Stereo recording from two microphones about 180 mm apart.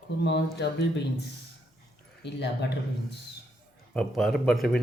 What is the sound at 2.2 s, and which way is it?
Speech, 70° left (ahead or behind).